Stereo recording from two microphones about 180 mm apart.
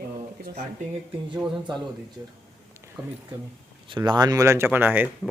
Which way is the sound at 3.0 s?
25° right (ahead or behind).